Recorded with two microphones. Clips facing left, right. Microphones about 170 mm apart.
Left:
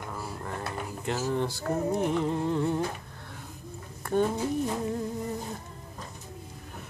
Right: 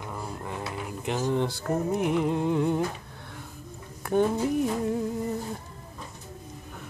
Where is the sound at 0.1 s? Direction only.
10° right (ahead or behind).